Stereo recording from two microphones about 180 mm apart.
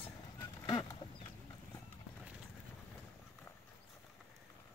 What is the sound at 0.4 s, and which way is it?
Duck, 20° left (ahead or behind).